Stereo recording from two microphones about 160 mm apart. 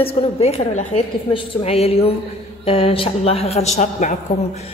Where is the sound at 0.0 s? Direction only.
40° left (ahead or behind).